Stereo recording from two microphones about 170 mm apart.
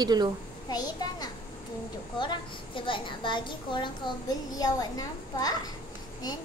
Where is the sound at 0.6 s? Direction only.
20° left (ahead or behind).